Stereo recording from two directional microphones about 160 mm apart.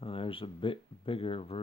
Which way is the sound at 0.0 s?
35° left (ahead or behind).